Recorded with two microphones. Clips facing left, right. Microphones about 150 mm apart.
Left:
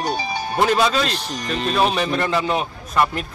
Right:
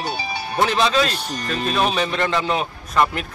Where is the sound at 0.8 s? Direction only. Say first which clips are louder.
Even; 5° left (ahead or behind).